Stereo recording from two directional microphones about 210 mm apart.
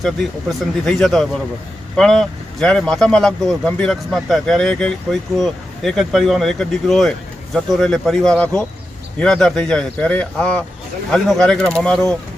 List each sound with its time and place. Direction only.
0.0 s speech: centre (ahead or behind)